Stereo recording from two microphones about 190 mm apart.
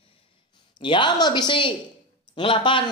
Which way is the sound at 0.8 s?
25° left (ahead or behind).